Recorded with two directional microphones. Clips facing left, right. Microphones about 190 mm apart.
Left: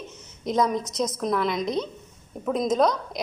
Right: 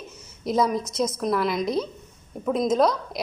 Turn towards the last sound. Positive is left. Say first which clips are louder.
# right 1 dB
turn(degrees=0)  # may be behind; listen again after turning